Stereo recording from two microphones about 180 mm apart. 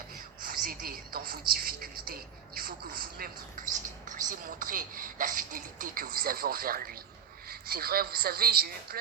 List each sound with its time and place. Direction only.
0.4 s a woman's voice: 50° right (ahead or behind)